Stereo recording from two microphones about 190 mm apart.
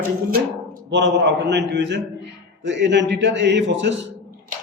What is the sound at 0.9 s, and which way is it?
A man's voice, 65° right (ahead or behind).